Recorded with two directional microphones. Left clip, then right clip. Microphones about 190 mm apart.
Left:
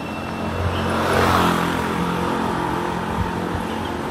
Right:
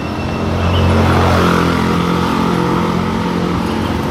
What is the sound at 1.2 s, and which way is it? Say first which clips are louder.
Vehicle: right 4 dB; 40° left (ahead or behind).